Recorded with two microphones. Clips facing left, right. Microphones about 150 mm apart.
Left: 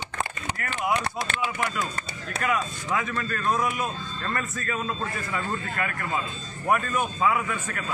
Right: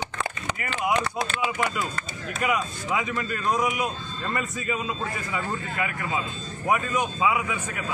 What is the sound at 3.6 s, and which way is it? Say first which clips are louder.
A man's voice: right 1 dB; 15° right (ahead or behind).